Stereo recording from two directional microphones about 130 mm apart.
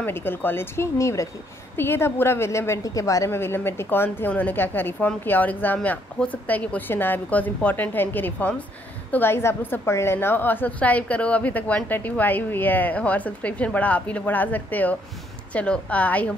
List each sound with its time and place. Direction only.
0.0 s a woman's voice: 15° left (ahead or behind)